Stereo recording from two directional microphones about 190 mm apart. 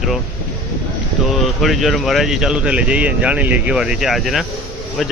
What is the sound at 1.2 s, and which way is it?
Speech, centre (ahead or behind).